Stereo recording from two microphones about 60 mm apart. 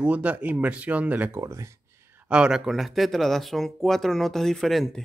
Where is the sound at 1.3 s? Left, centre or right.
Right.